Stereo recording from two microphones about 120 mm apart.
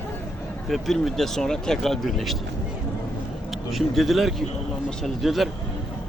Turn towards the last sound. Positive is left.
turn(degrees=0)  # may be behind; listen again after turning